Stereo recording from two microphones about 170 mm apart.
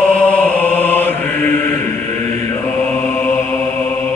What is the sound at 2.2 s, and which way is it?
Mantra, 40° right (ahead or behind).